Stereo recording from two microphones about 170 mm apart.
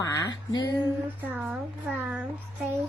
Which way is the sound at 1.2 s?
10° right (ahead or behind).